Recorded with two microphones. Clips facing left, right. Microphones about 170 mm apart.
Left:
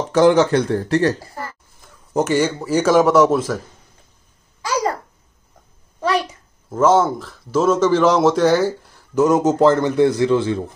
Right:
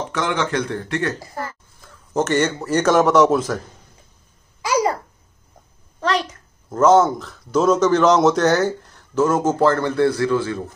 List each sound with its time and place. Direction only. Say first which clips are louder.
0.1 s speech: left 11 dB; 35° left (ahead or behind)
1.8 s speech: left 2 dB; 15° left (ahead or behind)
4.6 s babbling: right 2 dB; 10° right (ahead or behind)
5.9 s a sound: left 2 dB; 10° left (ahead or behind)
6.7 s a man's voice: right 1 dB; 5° left (ahead or behind)
9.1 s a man's voice: left 3 dB; 15° left (ahead or behind)